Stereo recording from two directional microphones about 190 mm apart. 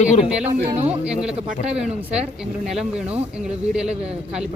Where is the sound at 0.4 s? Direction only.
35° right (ahead or behind).